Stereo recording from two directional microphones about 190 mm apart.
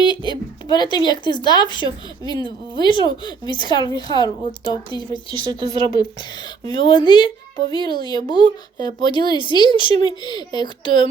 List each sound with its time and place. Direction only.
0.0 s a woman's voice: 25° left (ahead or behind)
5.3 s speech: 20° right (ahead or behind)
6.7 s a woman's voice: 25° left (ahead or behind)